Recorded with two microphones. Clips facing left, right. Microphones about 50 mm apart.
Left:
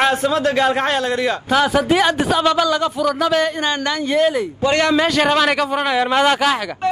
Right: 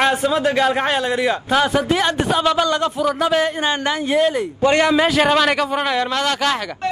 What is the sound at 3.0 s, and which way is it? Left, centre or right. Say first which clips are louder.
A man's voice: even; centre.